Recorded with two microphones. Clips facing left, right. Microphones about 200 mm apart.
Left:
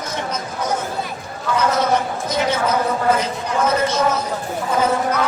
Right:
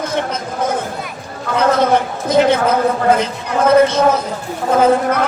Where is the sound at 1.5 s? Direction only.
55° right (ahead or behind).